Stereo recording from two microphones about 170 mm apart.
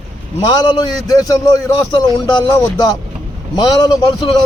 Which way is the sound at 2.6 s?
25° left (ahead or behind).